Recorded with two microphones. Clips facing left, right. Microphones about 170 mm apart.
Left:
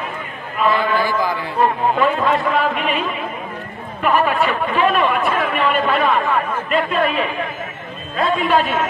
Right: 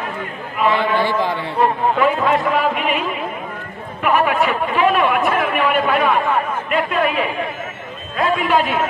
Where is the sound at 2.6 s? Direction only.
10° right (ahead or behind).